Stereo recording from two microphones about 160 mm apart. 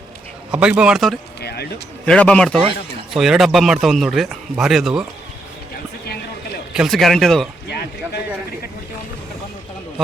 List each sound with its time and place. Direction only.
0.5 s speech: 5° right (ahead or behind)
1.4 s a sound: 85° left
2.0 s speech: 5° left (ahead or behind)
2.6 s speech: 35° right (ahead or behind)
3.2 s speech: centre (ahead or behind)
6.7 s speech: centre (ahead or behind)
7.7 s speech: 90° left